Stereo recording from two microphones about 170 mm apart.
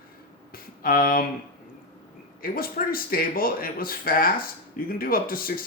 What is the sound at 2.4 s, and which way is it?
Speech, 60° left (ahead or behind).